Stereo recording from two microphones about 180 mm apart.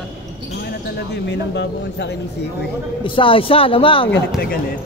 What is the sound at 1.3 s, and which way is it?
Speech, 70° left (ahead or behind).